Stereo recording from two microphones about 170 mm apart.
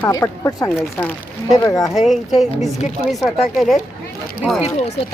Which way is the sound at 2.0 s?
Centre (ahead or behind).